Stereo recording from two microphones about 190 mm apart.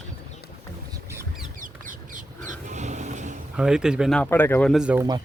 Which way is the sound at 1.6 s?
45° right (ahead or behind).